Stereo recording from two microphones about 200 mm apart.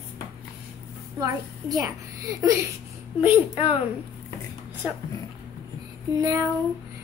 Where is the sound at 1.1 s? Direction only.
20° right (ahead or behind).